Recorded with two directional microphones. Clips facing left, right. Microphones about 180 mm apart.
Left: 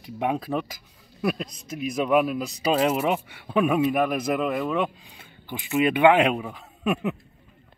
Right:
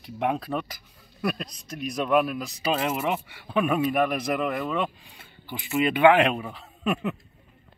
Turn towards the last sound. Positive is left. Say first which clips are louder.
# left 2 dB
turn(degrees=15)  # may be behind; listen again after turning